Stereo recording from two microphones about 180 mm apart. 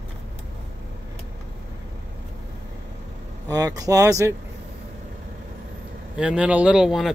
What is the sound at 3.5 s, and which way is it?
Speech, 20° right (ahead or behind).